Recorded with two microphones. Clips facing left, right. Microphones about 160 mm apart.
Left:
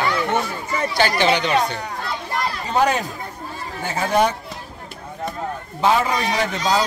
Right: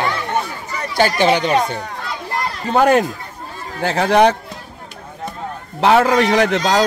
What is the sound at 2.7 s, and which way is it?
Speech, 60° right (ahead or behind).